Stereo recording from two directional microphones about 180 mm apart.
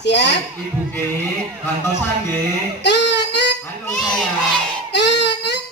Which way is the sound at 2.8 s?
70° left (ahead or behind).